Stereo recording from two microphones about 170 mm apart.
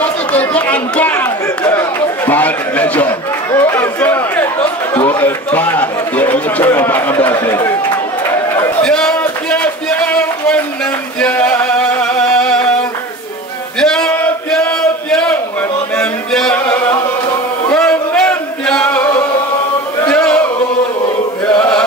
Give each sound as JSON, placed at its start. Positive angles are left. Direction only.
{"t": 0.0, "sound": "chatter", "side_deg": 10}
{"t": 5.2, "sound": "a man's voice", "side_deg": 10}
{"t": 8.3, "sound": "chatter", "side_deg": 15}
{"t": 8.8, "sound": "a sound", "side_deg": 5}
{"t": 11.1, "sound": "music", "side_deg": 5}
{"t": 13.7, "sound": "a sound", "side_deg": 5}
{"t": 17.6, "sound": "music", "side_deg": 5}
{"t": 20.1, "sound": "a sound", "side_deg": 5}
{"t": 21.5, "sound": "chant", "side_deg": 5}